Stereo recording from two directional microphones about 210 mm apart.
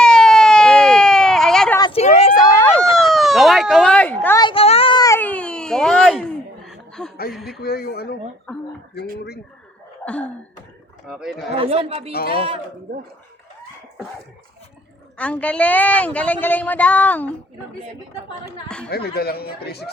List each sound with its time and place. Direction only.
0.0 s a sound: 5° left (ahead or behind)
1.8 s a sound: 30° left (ahead or behind)
2.4 s a sound: 10° left (ahead or behind)
4.4 s a sound: 25° left (ahead or behind); by 6.2 s centre (ahead or behind)
6.7 s chuckle: 5° left (ahead or behind)
7.3 s speech: centre (ahead or behind)
7.6 s speech: 50° left (ahead or behind)
11.1 s speech: centre (ahead or behind)
11.5 s speech: 25° right (ahead or behind)
12.1 s speech: 45° left (ahead or behind)
15.2 s a woman's voice: 5° left (ahead or behind)
18.9 s speech: 50° left (ahead or behind)